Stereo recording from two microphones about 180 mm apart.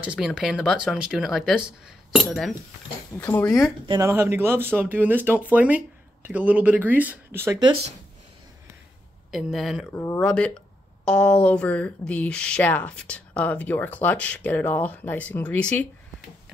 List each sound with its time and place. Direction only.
0.0 s speech: 5° right (ahead or behind)
3.2 s speech: 10° left (ahead or behind)
3.8 s speech: 25° right (ahead or behind)
4.1 s speech: 15° right (ahead or behind)
9.3 s speech: centre (ahead or behind)
9.9 s speech: 15° left (ahead or behind)